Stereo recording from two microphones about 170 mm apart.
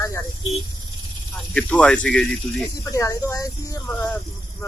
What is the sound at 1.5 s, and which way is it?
Speech, 5° left (ahead or behind).